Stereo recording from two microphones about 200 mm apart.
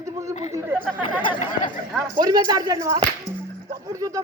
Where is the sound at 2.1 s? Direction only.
20° right (ahead or behind).